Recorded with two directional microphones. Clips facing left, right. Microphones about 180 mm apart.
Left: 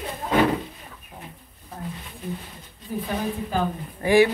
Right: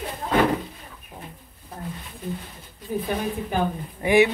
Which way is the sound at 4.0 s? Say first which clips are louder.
Left 1 dB; 20° right (ahead or behind).